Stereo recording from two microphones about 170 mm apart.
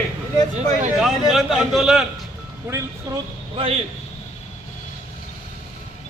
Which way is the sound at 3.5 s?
35° right (ahead or behind).